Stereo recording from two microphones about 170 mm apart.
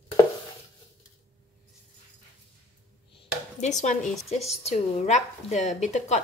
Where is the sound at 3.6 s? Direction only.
45° left (ahead or behind).